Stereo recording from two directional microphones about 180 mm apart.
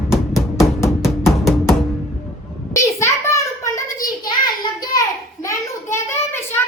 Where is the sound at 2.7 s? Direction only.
15° left (ahead or behind).